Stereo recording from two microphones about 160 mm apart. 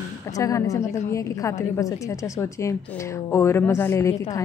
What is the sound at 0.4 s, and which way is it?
A woman's voice, 20° left (ahead or behind).